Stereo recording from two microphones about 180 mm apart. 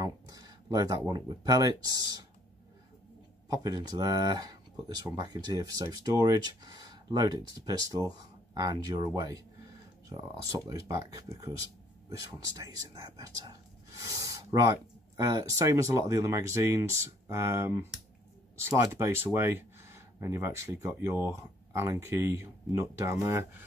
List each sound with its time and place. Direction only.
0.0 s speech: 20° right (ahead or behind)
3.5 s speech: 20° right (ahead or behind)
13.9 s a sound: 20° right (ahead or behind)
15.1 s speech: 20° right (ahead or behind)